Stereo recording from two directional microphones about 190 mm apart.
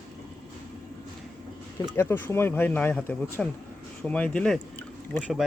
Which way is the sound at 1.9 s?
10° left (ahead or behind).